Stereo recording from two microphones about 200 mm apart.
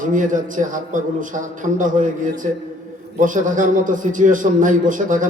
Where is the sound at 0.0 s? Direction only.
40° right (ahead or behind).